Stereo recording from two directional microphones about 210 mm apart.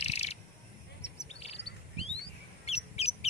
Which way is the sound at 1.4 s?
30° left (ahead or behind).